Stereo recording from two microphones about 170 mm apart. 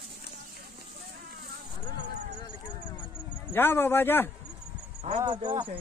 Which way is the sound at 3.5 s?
15° left (ahead or behind).